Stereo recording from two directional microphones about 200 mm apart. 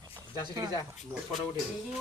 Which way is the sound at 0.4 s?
20° right (ahead or behind).